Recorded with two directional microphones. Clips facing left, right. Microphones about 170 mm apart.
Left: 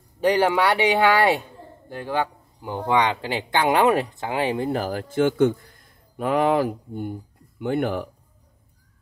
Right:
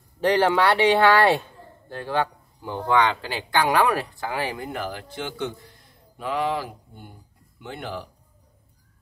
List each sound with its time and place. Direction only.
0.2 s speech: 10° left (ahead or behind)
4.6 s a man's voice: 40° left (ahead or behind); by 8.1 s 55° left (ahead or behind)